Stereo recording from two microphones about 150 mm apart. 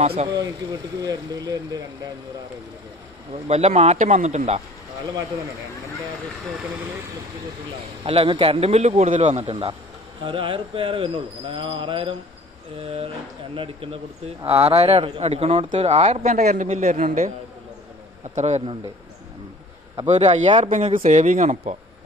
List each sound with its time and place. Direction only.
0.0 s speech: 45° right (ahead or behind)
1.0 s speech: 25° right (ahead or behind)
3.4 s speech: 45° right (ahead or behind)
8.0 s speech: 35° right (ahead or behind)
14.4 s speech: 40° right (ahead or behind)
18.3 s speech: 50° right (ahead or behind)
20.1 s speech: 50° right (ahead or behind)